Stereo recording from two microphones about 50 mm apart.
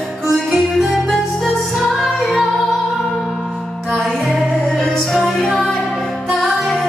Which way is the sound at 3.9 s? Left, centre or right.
Centre.